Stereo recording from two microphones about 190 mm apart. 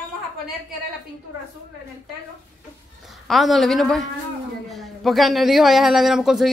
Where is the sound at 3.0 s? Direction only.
Centre (ahead or behind).